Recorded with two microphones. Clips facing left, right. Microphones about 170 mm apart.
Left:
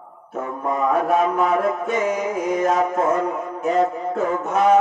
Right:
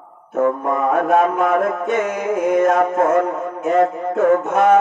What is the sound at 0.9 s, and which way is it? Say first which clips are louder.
Music: right 4 dB; 60° right (ahead or behind).